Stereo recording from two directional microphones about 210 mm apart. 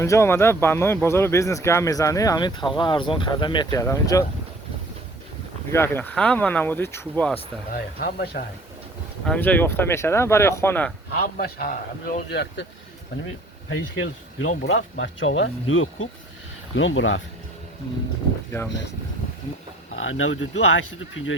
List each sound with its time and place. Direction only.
0.0 s speech: 15° left (ahead or behind)
5.7 s speech: 10° left (ahead or behind)
7.7 s a man's voice: 45° left (ahead or behind)
9.2 s speech: 5° left (ahead or behind)
11.2 s a man's voice: 45° left (ahead or behind)
13.2 s speech: 70° left (ahead or behind)
20.1 s speech: 70° left (ahead or behind)